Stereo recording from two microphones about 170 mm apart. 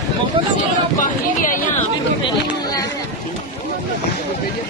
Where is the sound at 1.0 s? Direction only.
50° left (ahead or behind).